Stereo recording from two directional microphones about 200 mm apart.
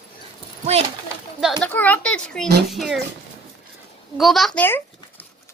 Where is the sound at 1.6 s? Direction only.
10° left (ahead or behind).